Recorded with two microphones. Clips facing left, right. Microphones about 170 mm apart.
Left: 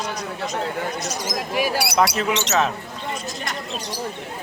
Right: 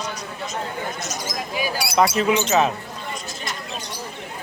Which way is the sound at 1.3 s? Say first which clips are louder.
Left 4 dB; 70° left (ahead or behind).